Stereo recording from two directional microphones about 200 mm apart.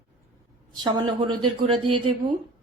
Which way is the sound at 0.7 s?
20° right (ahead or behind).